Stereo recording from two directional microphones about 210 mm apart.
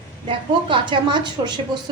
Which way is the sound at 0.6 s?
20° right (ahead or behind).